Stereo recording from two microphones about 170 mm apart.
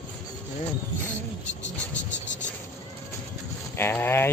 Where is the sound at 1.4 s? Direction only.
90° left.